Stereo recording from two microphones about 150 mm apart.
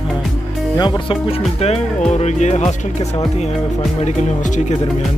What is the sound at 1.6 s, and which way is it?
Speech, 45° left (ahead or behind).